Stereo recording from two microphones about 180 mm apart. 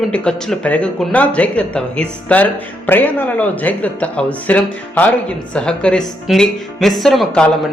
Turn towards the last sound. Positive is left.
turn(degrees=5)  # may be behind; listen again after turning